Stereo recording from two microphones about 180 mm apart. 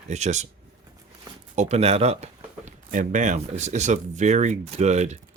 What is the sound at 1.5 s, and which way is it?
Speech, 40° right (ahead or behind).